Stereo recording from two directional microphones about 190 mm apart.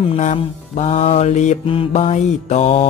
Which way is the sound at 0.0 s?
35° left (ahead or behind).